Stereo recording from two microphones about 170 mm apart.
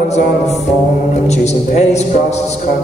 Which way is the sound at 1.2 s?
40° left (ahead or behind).